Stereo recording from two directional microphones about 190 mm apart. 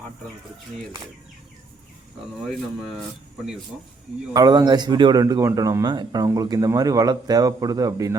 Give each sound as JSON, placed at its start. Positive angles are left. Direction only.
{"t": 4.4, "sound": "a man's voice", "side_deg": -20}